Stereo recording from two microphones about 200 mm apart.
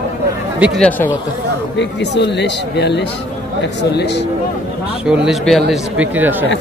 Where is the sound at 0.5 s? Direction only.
5° right (ahead or behind).